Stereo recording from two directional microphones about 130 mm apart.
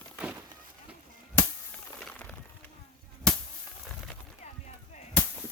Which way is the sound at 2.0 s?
10° left (ahead or behind).